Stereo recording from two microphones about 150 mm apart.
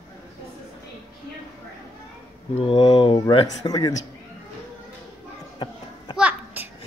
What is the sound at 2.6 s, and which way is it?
A man's voice, 35° left (ahead or behind).